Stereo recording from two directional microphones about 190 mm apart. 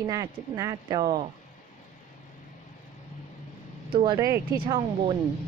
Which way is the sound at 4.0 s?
20° right (ahead or behind).